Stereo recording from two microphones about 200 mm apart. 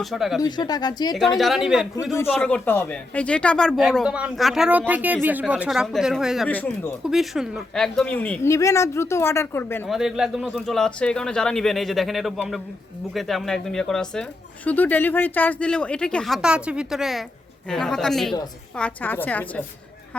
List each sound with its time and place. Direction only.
0.0 s speech: centre (ahead or behind)
0.4 s speech: 20° left (ahead or behind)
1.4 s speech: centre (ahead or behind)
9.9 s a woman's voice: centre (ahead or behind)